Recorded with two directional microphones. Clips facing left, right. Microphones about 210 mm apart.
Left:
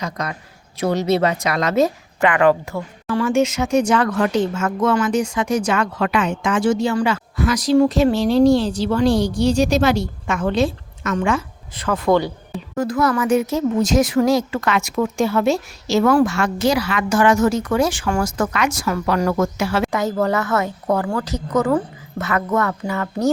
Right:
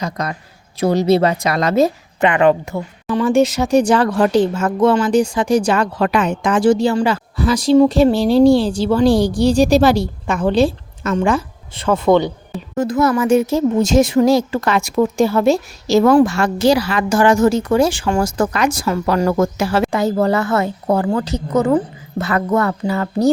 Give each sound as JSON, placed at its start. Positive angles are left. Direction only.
{"t": 0.0, "sound": "speech", "side_deg": -35}
{"t": 3.2, "sound": "a woman's voice", "side_deg": -35}
{"t": 22.2, "sound": "speech", "side_deg": -35}